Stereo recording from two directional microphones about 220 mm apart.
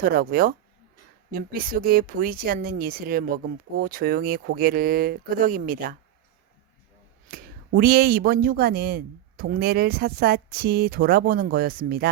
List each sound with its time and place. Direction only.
0.0 s speech: 40° right (ahead or behind)
7.8 s speech: 45° right (ahead or behind)